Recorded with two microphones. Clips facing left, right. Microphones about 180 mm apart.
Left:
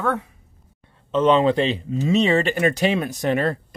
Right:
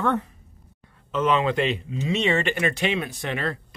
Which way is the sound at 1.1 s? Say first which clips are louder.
Left 5 dB; 30° left (ahead or behind).